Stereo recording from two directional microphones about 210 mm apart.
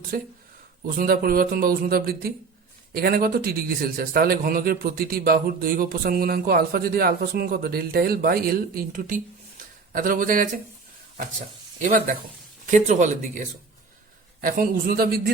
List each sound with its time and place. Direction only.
0.1 s a man's voice: 45° right (ahead or behind)
14.4 s a man's voice: 40° right (ahead or behind)